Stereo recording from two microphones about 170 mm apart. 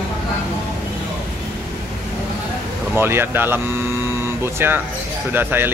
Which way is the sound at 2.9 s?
15° right (ahead or behind).